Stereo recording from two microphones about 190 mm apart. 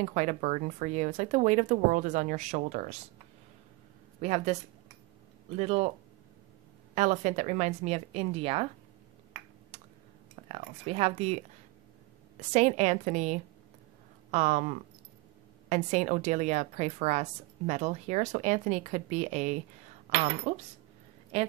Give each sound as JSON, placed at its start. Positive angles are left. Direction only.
{"t": 0.0, "sound": "a woman's voice", "side_deg": -40}
{"t": 4.2, "sound": "a woman's voice", "side_deg": -35}
{"t": 5.6, "sound": "a woman's voice", "side_deg": -35}
{"t": 7.0, "sound": "a woman's voice", "side_deg": -35}
{"t": 9.7, "sound": "a sound", "side_deg": -30}
{"t": 10.5, "sound": "a woman's voice", "side_deg": -30}